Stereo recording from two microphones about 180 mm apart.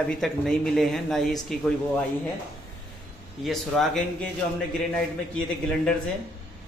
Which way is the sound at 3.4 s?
Centre (ahead or behind).